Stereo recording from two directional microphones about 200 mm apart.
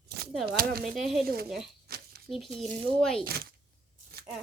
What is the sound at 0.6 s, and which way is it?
Speech, 50° right (ahead or behind).